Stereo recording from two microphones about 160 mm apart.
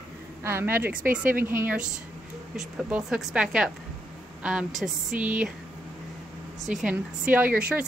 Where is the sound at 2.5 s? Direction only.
Centre (ahead or behind).